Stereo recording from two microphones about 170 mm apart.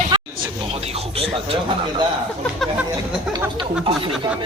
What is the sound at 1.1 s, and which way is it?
Speech, 35° right (ahead or behind).